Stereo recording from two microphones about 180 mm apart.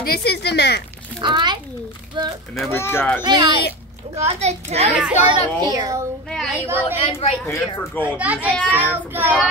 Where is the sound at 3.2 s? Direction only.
25° right (ahead or behind).